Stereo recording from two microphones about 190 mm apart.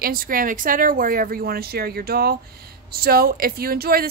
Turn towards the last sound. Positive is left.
turn(degrees=-55)  # may be behind; listen again after turning